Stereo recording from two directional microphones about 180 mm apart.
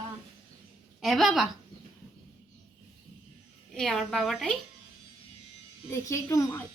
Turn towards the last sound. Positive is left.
turn(degrees=15)  # may be behind; listen again after turning